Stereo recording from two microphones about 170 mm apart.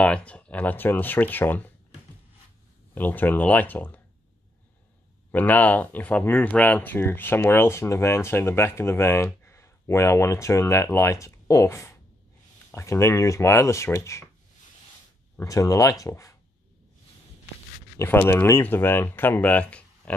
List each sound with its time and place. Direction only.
0.0 s speech: 5° left (ahead or behind)
2.9 s speech: 10° left (ahead or behind)
5.3 s speech: 10° left (ahead or behind)
15.3 s speech: 20° left (ahead or behind)
17.9 s speech: 15° left (ahead or behind)